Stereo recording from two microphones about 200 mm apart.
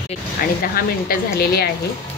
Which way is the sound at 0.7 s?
50° left (ahead or behind).